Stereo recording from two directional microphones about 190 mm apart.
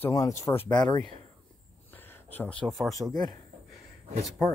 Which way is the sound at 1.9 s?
10° left (ahead or behind).